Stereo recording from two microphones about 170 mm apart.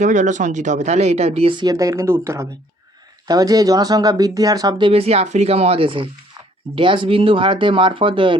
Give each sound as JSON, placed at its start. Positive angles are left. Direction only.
{"t": 0.0, "sound": "speech", "side_deg": -45}
{"t": 4.9, "sound": "speech", "side_deg": -35}